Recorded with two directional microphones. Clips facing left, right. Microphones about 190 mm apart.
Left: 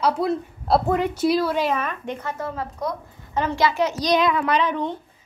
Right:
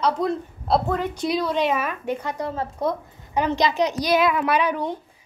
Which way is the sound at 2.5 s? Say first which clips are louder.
Right 3 dB; 25° right (ahead or behind).